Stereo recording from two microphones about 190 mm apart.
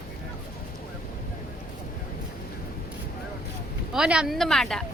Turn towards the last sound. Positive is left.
turn(degrees=5)  # may be behind; listen again after turning